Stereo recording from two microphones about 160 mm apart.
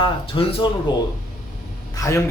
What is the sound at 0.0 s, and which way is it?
Speech, 30° left (ahead or behind).